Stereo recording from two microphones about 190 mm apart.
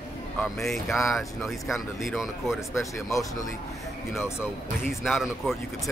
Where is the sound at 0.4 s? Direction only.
Centre (ahead or behind).